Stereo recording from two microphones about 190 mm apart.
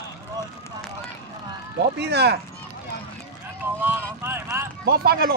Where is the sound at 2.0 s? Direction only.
60° right (ahead or behind).